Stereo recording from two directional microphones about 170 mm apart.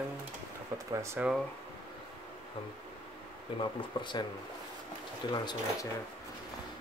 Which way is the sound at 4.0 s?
25° left (ahead or behind).